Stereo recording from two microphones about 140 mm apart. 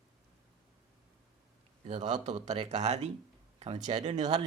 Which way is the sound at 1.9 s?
55° right (ahead or behind).